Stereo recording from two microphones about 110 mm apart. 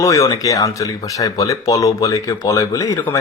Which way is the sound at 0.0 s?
30° left (ahead or behind).